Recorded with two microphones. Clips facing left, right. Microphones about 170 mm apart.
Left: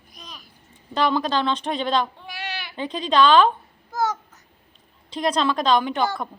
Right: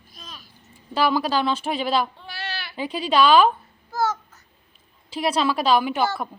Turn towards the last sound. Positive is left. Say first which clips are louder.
# even
turn(degrees=-5)  # may be behind; listen again after turning